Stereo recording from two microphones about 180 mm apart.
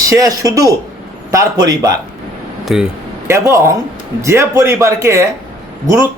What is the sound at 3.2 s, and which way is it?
Speech, 15° right (ahead or behind).